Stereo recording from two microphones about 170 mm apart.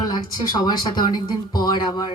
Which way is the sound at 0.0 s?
25° left (ahead or behind).